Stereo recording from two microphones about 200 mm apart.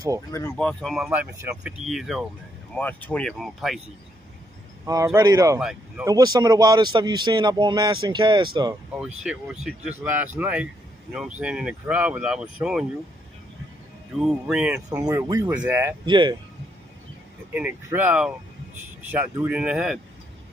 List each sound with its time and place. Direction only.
0.3 s speech: 10° left (ahead or behind); by 1.9 s 10° right (ahead or behind)
1.9 s speech: centre (ahead or behind)
4.8 s speech: 15° right (ahead or behind)
5.6 s speech: 5° right (ahead or behind)
6.0 s speech: 20° right (ahead or behind)
9.0 s speech: 5° right (ahead or behind)
14.1 s speech: 5° right (ahead or behind)
14.9 s speech: 15° right (ahead or behind)
16.1 s speech: 25° right (ahead or behind)
17.6 s speech: 10° right (ahead or behind)